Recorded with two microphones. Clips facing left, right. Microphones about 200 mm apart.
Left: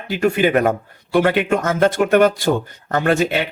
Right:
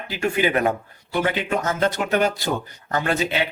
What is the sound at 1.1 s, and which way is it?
Speech, 65° left (ahead or behind).